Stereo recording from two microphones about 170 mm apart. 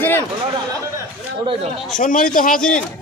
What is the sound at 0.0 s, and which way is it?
Chatter, 10° left (ahead or behind).